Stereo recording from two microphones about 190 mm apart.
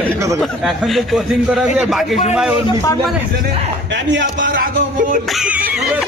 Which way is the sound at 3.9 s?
70° right (ahead or behind).